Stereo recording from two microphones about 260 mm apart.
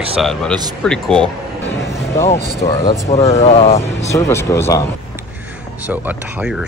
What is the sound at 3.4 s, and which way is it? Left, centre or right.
Speech, left.